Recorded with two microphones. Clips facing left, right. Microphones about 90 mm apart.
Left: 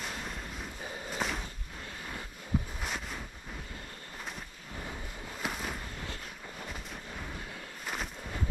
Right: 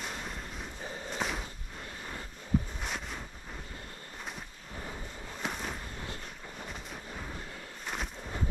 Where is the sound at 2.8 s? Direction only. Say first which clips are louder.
Even; centre (ahead or behind).